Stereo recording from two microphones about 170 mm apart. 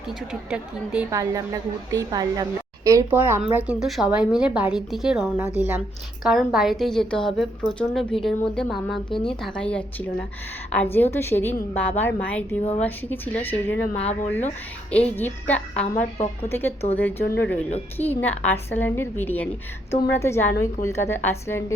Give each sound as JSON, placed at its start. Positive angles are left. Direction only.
{"t": 1.1, "sound": "a woman's voice", "side_deg": -20}
{"t": 16.1, "sound": "a woman's voice", "side_deg": 40}
{"t": 16.5, "sound": "a woman's voice", "side_deg": 10}